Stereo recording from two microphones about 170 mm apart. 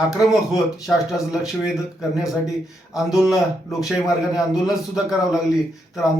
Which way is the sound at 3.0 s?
Centre (ahead or behind).